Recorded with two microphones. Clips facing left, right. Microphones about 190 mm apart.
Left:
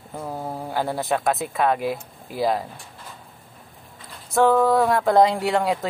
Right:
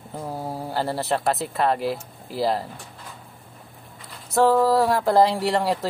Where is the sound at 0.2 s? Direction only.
10° right (ahead or behind).